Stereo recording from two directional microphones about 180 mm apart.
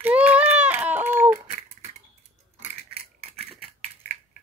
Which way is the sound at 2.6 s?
35° right (ahead or behind).